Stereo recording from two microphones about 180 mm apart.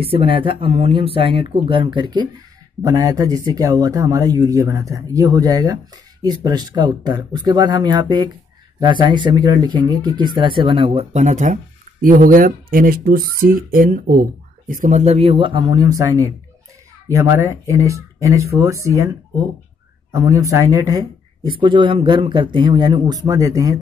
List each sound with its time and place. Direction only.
0.0 s speech: 30° right (ahead or behind)
11.1 s speech: 40° right (ahead or behind); by 23.8 s 20° right (ahead or behind)